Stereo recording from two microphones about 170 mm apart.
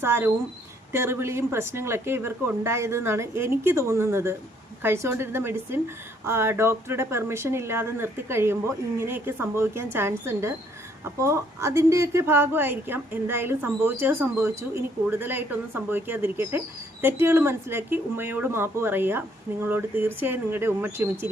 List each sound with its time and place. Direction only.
0.0 s speech: 15° right (ahead or behind)